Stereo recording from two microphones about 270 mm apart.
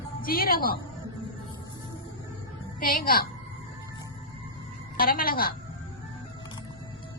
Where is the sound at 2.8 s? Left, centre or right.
Left.